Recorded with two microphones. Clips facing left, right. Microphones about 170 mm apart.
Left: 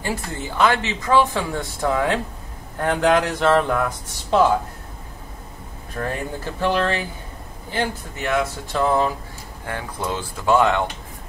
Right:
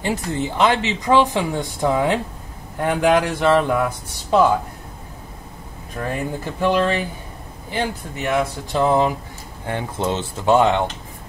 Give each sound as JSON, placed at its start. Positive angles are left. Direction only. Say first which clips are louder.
{"t": 0.0, "sound": "speech", "louder": "right 5 dB", "side_deg": -20}
{"t": 6.6, "sound": "speech", "louder": "right 3 dB", "side_deg": -15}